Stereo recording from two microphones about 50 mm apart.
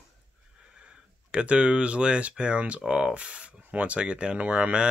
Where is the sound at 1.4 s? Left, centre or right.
Right.